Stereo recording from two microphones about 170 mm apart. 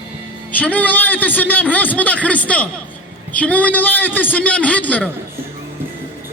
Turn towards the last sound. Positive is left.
turn(degrees=10)  # may be behind; listen again after turning